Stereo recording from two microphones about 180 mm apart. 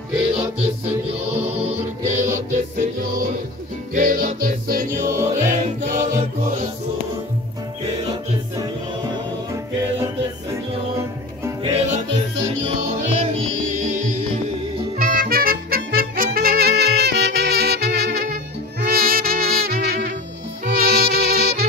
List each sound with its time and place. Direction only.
1.7 s music: 40° right (ahead or behind)
11.6 s music: 30° right (ahead or behind); by 21.6 s 60° right (ahead or behind)